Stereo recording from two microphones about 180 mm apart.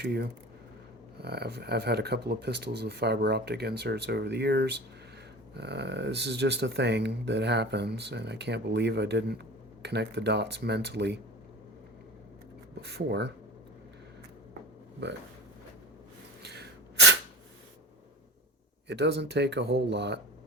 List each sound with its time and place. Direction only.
0.0 s speech: 65° right (ahead or behind)
12.8 s speech: 65° right (ahead or behind)
16.4 s sneeze: 65° right (ahead or behind)
18.9 s speech: 70° right (ahead or behind)